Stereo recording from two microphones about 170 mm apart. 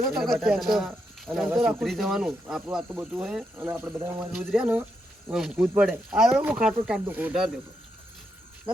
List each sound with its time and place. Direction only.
0.2 s speech: centre (ahead or behind)